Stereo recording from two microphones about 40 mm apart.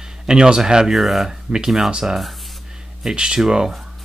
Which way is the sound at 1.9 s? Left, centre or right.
Centre.